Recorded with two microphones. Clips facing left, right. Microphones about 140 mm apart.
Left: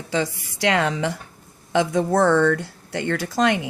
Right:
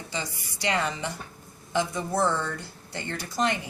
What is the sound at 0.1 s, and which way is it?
A woman's voice, 90° left.